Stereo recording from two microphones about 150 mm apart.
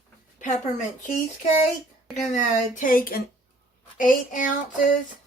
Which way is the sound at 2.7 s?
65° left (ahead or behind).